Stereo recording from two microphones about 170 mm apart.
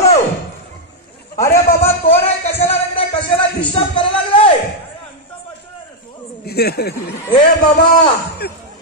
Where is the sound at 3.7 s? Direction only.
30° left (ahead or behind).